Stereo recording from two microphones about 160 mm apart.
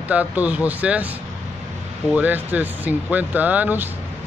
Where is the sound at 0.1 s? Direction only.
10° right (ahead or behind).